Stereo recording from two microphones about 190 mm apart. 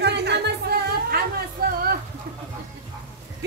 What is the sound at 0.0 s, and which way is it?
Music, 65° right (ahead or behind).